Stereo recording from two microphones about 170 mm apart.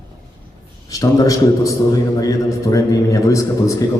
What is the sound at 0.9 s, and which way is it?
A man's voice, 20° left (ahead or behind).